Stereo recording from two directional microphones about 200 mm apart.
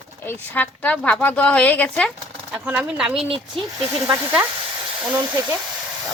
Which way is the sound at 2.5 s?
5° right (ahead or behind).